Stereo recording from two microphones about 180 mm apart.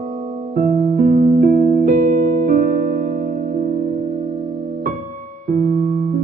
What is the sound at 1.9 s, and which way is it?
Music, 55° right (ahead or behind).